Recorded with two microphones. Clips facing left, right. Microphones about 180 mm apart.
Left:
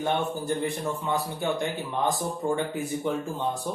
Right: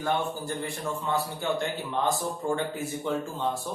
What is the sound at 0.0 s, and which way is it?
A man's voice, 20° left (ahead or behind).